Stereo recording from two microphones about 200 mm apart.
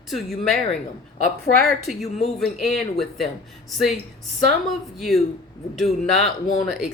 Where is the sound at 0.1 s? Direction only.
Centre (ahead or behind).